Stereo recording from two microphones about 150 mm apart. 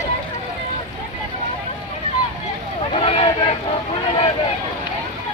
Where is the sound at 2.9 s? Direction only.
40° left (ahead or behind).